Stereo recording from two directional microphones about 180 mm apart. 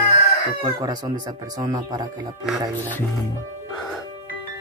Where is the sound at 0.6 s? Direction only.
25° right (ahead or behind).